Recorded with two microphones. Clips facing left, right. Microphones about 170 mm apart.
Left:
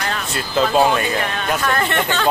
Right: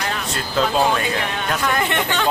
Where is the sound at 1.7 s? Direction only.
15° right (ahead or behind).